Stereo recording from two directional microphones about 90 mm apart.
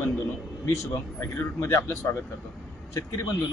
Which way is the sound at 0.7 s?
35° left (ahead or behind).